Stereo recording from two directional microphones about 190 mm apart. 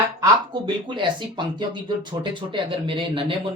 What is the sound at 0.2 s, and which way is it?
Speech, 25° right (ahead or behind).